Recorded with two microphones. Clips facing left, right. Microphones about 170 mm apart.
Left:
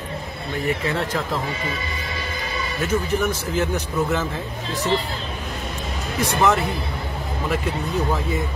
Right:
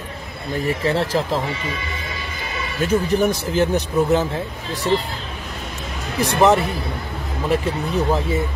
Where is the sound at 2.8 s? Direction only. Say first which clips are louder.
Right 4 dB; 35° right (ahead or behind).